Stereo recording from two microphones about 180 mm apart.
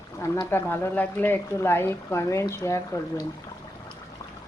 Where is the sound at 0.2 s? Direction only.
15° left (ahead or behind).